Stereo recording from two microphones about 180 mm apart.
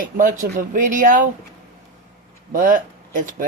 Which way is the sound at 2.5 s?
50° right (ahead or behind).